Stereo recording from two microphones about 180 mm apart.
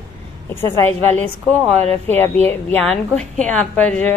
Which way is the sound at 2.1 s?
10° left (ahead or behind).